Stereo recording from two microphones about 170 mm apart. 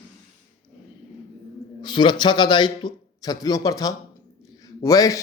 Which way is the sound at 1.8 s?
25° left (ahead or behind).